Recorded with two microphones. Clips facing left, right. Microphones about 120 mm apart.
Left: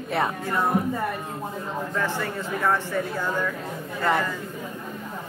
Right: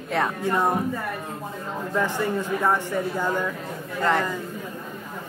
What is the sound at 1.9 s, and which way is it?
Speech, 15° right (ahead or behind).